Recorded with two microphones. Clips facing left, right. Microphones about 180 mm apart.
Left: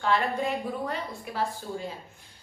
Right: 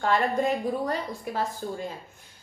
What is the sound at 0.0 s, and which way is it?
A woman's voice, 45° right (ahead or behind).